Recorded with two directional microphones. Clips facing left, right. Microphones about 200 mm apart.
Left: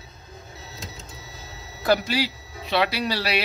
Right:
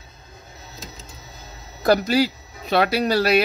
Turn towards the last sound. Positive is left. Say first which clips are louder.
# right 7 dB
turn(degrees=-45)  # may be behind; listen again after turning